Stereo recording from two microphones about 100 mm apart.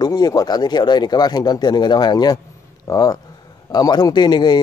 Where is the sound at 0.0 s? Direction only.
40° left (ahead or behind).